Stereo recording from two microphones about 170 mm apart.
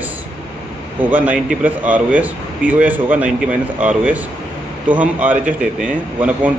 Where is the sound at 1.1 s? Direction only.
10° right (ahead or behind).